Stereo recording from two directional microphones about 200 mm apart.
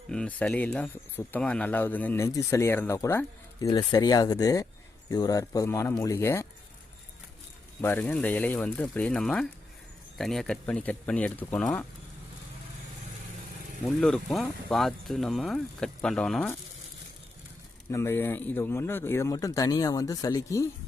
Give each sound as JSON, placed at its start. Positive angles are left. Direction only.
{"t": 0.1, "sound": "speech", "side_deg": 5}
{"t": 7.8, "sound": "speech", "side_deg": 10}
{"t": 13.8, "sound": "speech", "side_deg": 0}
{"t": 17.9, "sound": "speech", "side_deg": 10}